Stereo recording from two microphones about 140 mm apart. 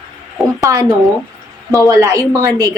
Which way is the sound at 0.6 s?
25° right (ahead or behind).